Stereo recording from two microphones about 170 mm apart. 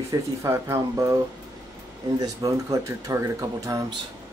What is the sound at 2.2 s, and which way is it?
Speech, 20° right (ahead or behind).